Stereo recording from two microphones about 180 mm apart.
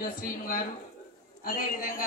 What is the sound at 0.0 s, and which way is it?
A man's voice, 55° left (ahead or behind).